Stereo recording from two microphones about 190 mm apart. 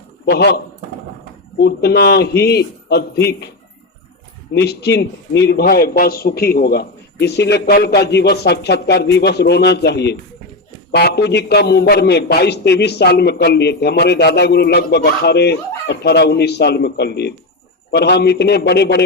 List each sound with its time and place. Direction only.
0.3 s a man's voice: 60° left (ahead or behind)
4.5 s a man's voice: 60° left (ahead or behind)